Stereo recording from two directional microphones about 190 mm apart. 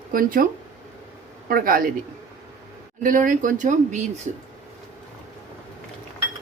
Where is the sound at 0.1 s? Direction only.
45° right (ahead or behind).